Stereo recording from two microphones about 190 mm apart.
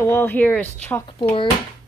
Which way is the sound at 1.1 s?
25° left (ahead or behind).